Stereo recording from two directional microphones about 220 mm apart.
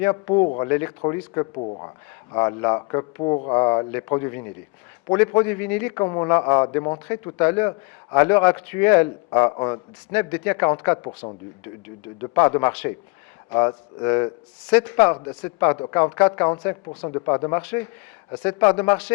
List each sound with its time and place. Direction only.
0.0 s speech: 20° left (ahead or behind)
0.7 s a man's voice: 15° left (ahead or behind)
1.5 s speech: 30° left (ahead or behind)
2.3 s a man's voice: 20° left (ahead or behind)